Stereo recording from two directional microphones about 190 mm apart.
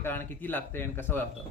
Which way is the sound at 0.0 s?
10° left (ahead or behind).